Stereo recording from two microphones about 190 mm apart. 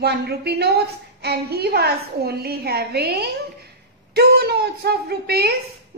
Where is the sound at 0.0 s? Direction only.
60° right (ahead or behind).